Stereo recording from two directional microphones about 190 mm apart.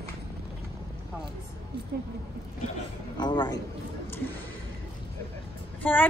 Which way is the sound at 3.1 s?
25° left (ahead or behind).